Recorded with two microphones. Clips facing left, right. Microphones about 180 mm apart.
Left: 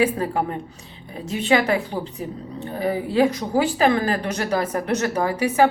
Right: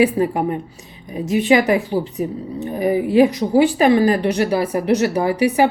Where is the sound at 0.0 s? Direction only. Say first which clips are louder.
Right 5 dB; 15° right (ahead or behind).